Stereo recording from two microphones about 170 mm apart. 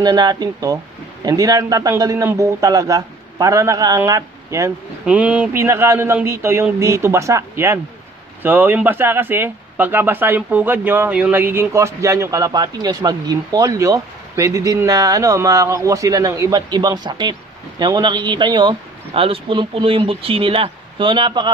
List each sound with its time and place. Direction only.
0.0 s speech: 25° right (ahead or behind)
5.0 s a man's voice: 5° right (ahead or behind); by 21.5 s 30° right (ahead or behind)